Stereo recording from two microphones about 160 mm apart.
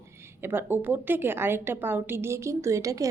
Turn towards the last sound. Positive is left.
turn(degrees=-20)  # may be behind; listen again after turning